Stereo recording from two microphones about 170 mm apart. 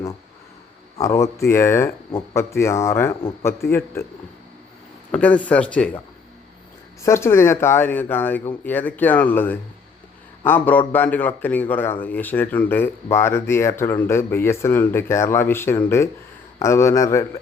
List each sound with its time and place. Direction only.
0.9 s a man's voice: 20° left (ahead or behind)
5.1 s a man's voice: 10° left (ahead or behind)
7.0 s a man's voice: 15° left (ahead or behind)